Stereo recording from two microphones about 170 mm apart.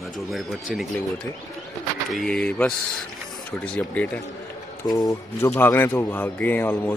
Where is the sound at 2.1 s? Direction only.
5° left (ahead or behind).